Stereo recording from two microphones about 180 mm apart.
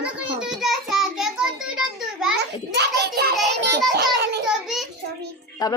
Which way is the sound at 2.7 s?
65° right (ahead or behind).